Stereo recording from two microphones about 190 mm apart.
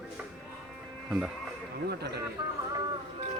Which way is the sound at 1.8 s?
60° right (ahead or behind).